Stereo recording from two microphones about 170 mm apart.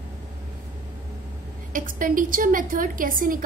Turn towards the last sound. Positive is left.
turn(degrees=-55)  # may be behind; listen again after turning